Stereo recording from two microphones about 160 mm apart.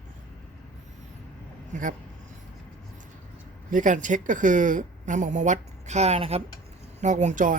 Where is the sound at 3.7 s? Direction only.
55° right (ahead or behind).